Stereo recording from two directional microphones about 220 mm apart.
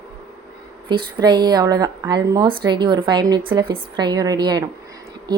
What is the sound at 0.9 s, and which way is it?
A woman's voice, 20° right (ahead or behind).